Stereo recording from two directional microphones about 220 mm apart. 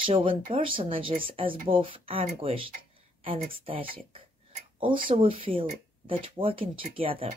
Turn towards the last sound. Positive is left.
turn(degrees=-25)  # may be behind; listen again after turning